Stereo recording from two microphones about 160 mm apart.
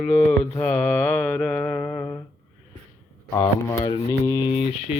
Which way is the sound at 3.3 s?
15° left (ahead or behind).